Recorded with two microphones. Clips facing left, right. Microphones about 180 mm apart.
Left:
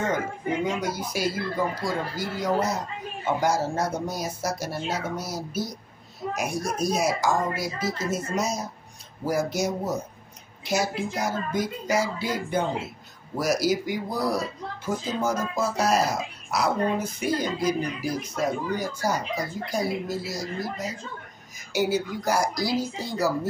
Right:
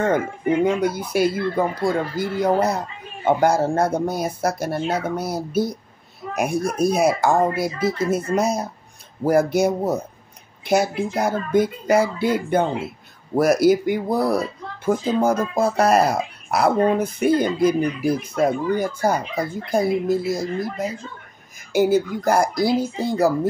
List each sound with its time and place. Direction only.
0.7 s speech: 55° right (ahead or behind)